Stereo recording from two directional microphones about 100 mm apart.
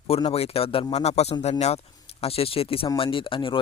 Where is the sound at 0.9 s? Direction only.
90° left.